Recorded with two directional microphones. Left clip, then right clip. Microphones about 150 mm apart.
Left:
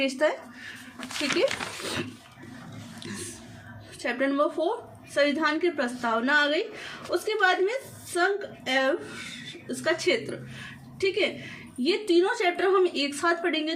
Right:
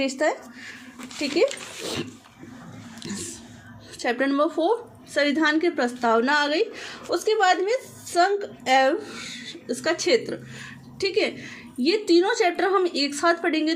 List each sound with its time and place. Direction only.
0.0 s speech: 30° right (ahead or behind)
4.0 s speech: 50° right (ahead or behind)